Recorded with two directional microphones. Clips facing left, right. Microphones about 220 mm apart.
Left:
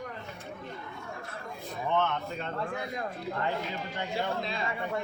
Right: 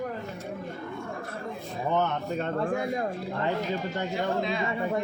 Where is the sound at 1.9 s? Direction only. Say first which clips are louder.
Right 2 dB; 40° right (ahead or behind).